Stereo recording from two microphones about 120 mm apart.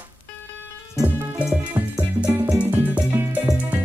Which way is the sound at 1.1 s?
10° right (ahead or behind).